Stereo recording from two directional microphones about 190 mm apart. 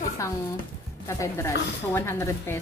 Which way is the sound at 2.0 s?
15° left (ahead or behind).